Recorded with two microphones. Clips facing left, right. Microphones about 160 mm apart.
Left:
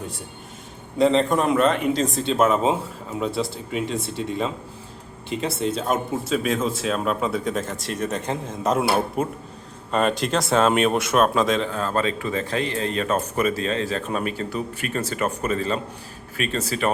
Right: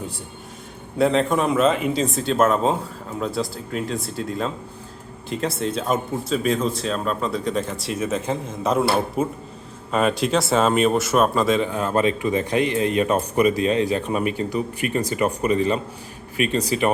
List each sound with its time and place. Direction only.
0.9 s speech: 5° right (ahead or behind)
11.7 s speech: 15° right (ahead or behind)